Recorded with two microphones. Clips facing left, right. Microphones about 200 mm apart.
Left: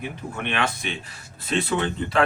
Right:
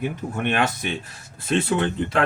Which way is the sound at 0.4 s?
45° right (ahead or behind).